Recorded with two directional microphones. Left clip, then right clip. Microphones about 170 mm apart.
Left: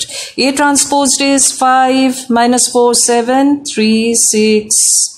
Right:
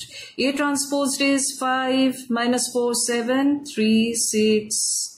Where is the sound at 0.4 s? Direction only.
60° left (ahead or behind).